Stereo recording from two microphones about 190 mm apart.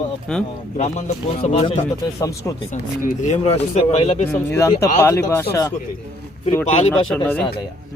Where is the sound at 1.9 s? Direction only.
15° left (ahead or behind).